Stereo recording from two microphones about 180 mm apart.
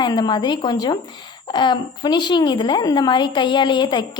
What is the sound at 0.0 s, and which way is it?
A woman's voice, 25° left (ahead or behind).